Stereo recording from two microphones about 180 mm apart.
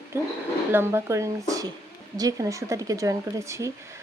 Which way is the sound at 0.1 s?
15° right (ahead or behind).